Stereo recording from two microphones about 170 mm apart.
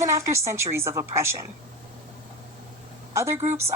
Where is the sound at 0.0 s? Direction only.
15° right (ahead or behind).